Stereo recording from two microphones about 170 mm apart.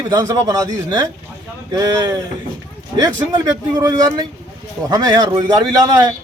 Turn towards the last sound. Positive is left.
turn(degrees=-25)  # may be behind; listen again after turning